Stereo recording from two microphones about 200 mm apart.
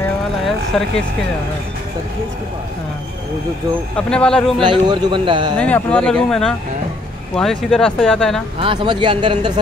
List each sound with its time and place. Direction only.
0.5 s speech: centre (ahead or behind)
3.9 s speech: 5° left (ahead or behind)
4.6 s speech: 20° right (ahead or behind)
5.6 s speech: 5° left (ahead or behind)
8.5 s speech: 25° right (ahead or behind)